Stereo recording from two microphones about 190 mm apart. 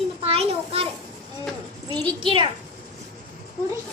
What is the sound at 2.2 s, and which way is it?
Speech, 25° right (ahead or behind).